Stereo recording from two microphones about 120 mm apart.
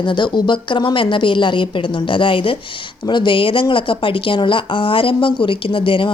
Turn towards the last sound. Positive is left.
turn(degrees=45)  # may be behind; listen again after turning